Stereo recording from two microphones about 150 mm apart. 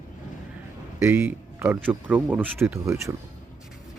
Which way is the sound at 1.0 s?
10° right (ahead or behind).